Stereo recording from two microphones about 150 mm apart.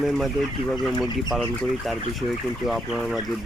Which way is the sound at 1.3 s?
Centre (ahead or behind).